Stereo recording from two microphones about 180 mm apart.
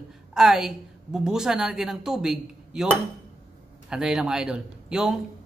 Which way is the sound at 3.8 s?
5° right (ahead or behind).